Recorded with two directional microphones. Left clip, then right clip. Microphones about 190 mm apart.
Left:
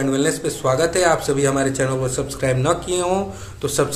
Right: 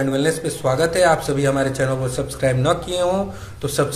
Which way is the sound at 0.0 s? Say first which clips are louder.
Even; 15° left (ahead or behind).